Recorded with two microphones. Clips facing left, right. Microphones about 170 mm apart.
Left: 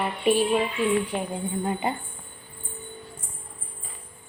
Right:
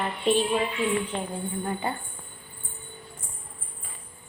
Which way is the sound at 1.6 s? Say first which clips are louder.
Left 3 dB; 20° left (ahead or behind).